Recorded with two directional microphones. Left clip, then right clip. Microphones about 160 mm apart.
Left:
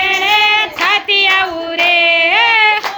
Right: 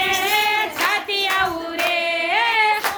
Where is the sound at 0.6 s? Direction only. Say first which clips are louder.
Left 7 dB; 10° left (ahead or behind).